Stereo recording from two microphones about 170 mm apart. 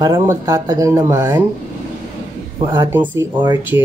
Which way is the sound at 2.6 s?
30° right (ahead or behind).